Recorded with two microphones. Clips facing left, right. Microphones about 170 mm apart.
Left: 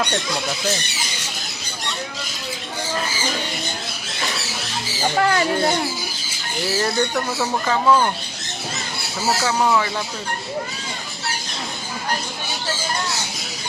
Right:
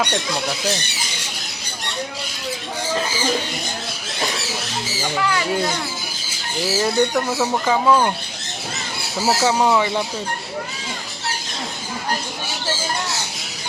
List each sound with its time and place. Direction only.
5.1 s speech: 45° left (ahead or behind)
6.7 s speech: 5° right (ahead or behind)
9.4 s speech: 15° right (ahead or behind)